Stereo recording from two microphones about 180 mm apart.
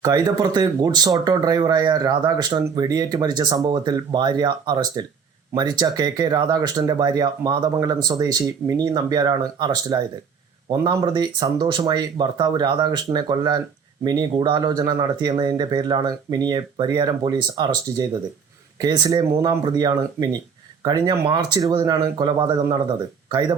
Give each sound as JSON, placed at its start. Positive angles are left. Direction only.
{"t": 0.0, "sound": "speech", "side_deg": -20}